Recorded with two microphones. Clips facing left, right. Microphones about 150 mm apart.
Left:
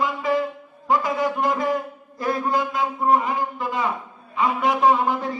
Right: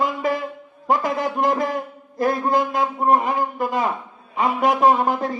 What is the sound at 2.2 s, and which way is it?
A man's voice, 50° right (ahead or behind).